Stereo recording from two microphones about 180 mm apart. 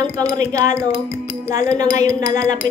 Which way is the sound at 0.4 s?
20° right (ahead or behind).